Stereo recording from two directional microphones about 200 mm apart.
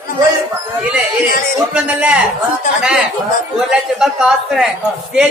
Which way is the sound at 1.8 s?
5° right (ahead or behind).